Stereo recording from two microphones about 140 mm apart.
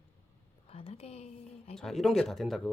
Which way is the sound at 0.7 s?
45° left (ahead or behind).